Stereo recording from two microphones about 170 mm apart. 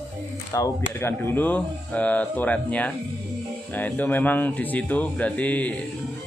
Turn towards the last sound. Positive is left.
turn(degrees=10)  # may be behind; listen again after turning